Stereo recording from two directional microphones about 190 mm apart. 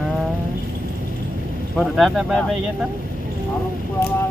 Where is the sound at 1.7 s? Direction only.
Centre (ahead or behind).